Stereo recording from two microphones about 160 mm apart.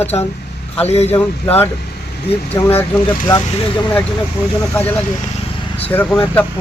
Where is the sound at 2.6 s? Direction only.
15° left (ahead or behind).